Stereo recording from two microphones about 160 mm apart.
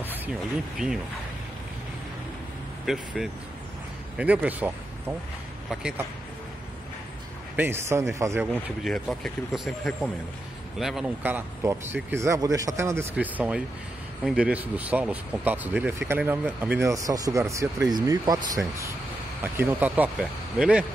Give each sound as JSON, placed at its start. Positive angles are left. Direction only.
{"t": 0.0, "sound": "speech", "side_deg": -10}
{"t": 2.8, "sound": "speech", "side_deg": 0}
{"t": 7.5, "sound": "speech", "side_deg": -15}
{"t": 8.8, "sound": "speech", "side_deg": 0}